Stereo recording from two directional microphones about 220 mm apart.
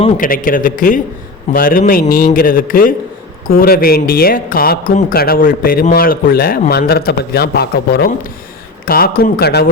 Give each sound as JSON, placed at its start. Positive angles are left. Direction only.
{"t": 0.2, "sound": "a man's voice", "side_deg": 40}